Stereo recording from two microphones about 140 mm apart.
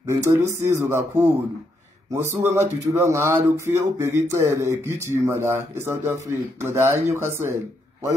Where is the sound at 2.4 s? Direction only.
20° right (ahead or behind).